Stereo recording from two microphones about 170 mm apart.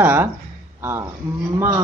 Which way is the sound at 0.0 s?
10° right (ahead or behind).